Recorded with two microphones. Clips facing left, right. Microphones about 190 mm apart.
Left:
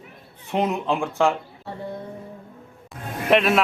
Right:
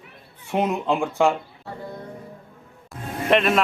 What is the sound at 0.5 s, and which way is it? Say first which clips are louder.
Speech: right 1 dB; 15° right (ahead or behind).